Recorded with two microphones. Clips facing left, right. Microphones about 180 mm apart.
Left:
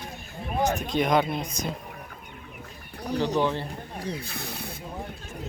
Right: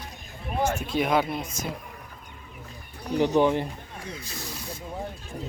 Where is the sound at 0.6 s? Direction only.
5° right (ahead or behind).